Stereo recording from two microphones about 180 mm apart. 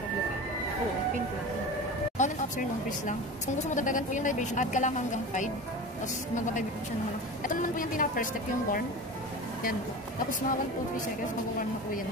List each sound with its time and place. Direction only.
2.1 s vehicle: 45° left (ahead or behind)
3.1 s a woman's voice: 45° left (ahead or behind)
7.4 s a woman's voice: 50° left (ahead or behind)